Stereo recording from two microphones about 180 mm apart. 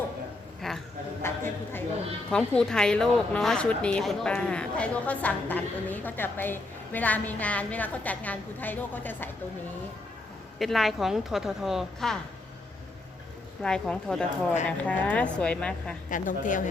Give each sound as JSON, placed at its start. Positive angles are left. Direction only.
{"t": 0.6, "sound": "a sound", "side_deg": 0}
{"t": 1.2, "sound": "a sound", "side_deg": 15}
{"t": 2.3, "sound": "a woman's voice", "side_deg": 5}
{"t": 10.6, "sound": "a woman's voice", "side_deg": 0}
{"t": 13.6, "sound": "a woman's voice", "side_deg": 5}
{"t": 16.0, "sound": "a woman's voice", "side_deg": 45}